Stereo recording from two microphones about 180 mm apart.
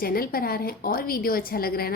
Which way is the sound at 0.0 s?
55° left (ahead or behind).